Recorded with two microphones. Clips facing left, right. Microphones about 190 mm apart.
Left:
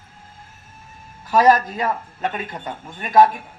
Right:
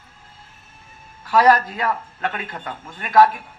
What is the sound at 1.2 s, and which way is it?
A man's voice, 20° left (ahead or behind).